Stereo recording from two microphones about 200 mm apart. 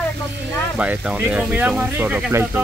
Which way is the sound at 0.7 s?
5° right (ahead or behind).